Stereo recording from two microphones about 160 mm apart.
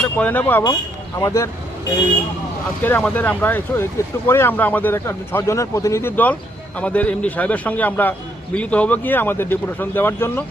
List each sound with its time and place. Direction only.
0.0 s speech: 10° left (ahead or behind)
2.8 s speech: 10° left (ahead or behind)